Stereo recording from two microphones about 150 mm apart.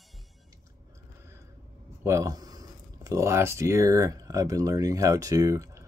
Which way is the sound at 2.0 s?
20° right (ahead or behind).